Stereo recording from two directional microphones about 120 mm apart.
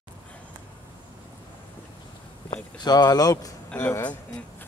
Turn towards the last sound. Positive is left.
turn(degrees=15)  # may be behind; listen again after turning